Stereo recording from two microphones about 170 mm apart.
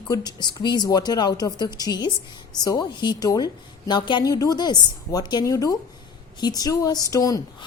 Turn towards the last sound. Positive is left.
turn(degrees=20)  # may be behind; listen again after turning